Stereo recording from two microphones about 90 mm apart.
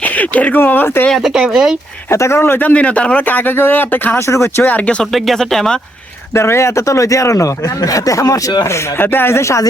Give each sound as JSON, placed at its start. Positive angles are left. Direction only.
{"t": 0.0, "sound": "speech", "side_deg": 15}
{"t": 1.1, "sound": "speech", "side_deg": -5}
{"t": 2.0, "sound": "speech", "side_deg": 30}
{"t": 4.3, "sound": "speech", "side_deg": 30}
{"t": 4.6, "sound": "speech", "side_deg": 15}
{"t": 5.1, "sound": "speech", "side_deg": 0}
{"t": 6.3, "sound": "speech", "side_deg": 30}